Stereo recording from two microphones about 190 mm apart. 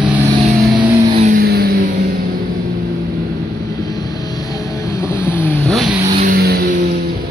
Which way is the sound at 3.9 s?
20° left (ahead or behind).